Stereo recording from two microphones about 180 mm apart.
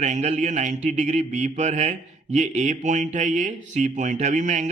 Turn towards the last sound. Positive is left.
turn(degrees=-45)  # may be behind; listen again after turning